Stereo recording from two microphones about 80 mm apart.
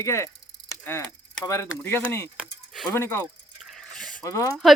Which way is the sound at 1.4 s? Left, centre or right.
Left.